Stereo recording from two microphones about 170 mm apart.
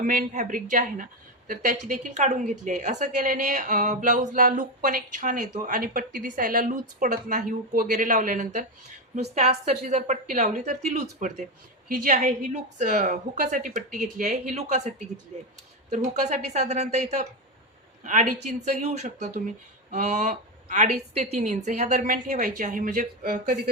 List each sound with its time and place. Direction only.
0.0 s speech: 55° right (ahead or behind)